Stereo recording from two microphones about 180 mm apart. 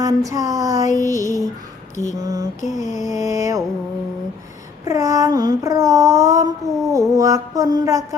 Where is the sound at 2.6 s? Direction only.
45° left (ahead or behind).